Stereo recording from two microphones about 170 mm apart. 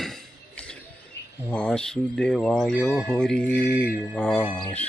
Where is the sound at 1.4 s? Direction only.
5° left (ahead or behind).